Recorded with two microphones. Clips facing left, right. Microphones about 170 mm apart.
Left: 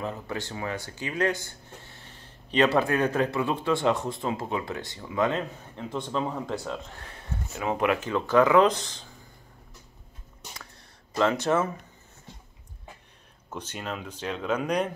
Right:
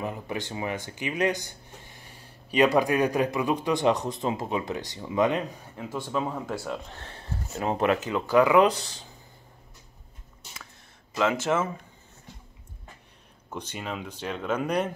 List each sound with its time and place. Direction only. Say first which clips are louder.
0.0 s speech: right 1 dB; 15° right (ahead or behind)
6.9 s speech: right 1 dB; 30° right (ahead or behind)
8.0 s speech: even; 15° right (ahead or behind)
8.6 s speech: even; 35° right (ahead or behind)
11.1 s speech: left 1 dB; 5° right (ahead or behind)
13.6 s speech: right 1 dB; 10° right (ahead or behind)